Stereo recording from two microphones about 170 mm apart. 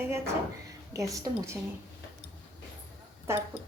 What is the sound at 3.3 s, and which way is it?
Speech, 15° right (ahead or behind).